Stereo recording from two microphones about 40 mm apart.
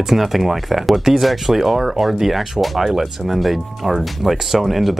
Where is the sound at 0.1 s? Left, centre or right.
Centre.